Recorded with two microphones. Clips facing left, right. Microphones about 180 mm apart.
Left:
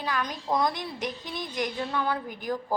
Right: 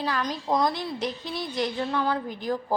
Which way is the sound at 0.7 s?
15° left (ahead or behind).